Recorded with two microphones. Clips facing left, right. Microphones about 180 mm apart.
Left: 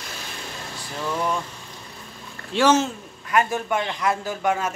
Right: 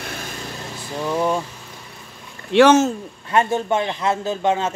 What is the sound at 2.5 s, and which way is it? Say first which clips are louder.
Speech: right 6 dB; 65° right (ahead or behind).